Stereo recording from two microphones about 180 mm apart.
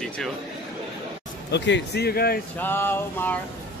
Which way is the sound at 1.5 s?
75° left (ahead or behind).